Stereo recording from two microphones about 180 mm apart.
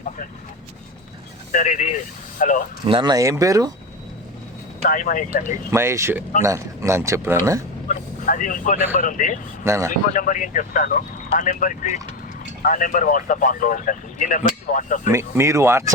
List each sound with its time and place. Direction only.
1.5 s speech: 45° left (ahead or behind)
2.8 s speech: 25° right (ahead or behind)
4.8 s speech: 50° left (ahead or behind)
5.7 s speech: 15° right (ahead or behind)
7.9 s speech: 45° left (ahead or behind)
9.6 s speech: 15° right (ahead or behind)
9.9 s speech: 45° left (ahead or behind)
15.4 s speech: 15° right (ahead or behind)